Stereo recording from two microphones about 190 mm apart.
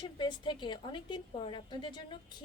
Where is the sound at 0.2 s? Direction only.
25° left (ahead or behind).